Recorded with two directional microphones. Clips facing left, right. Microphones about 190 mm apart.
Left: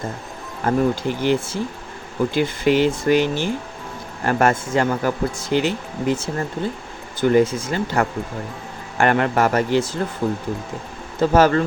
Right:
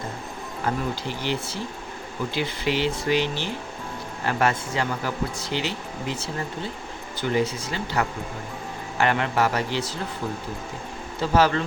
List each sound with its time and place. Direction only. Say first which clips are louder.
0.6 s speech: left 8 dB; 50° left (ahead or behind)
11.2 s speech: left 6 dB; 50° left (ahead or behind)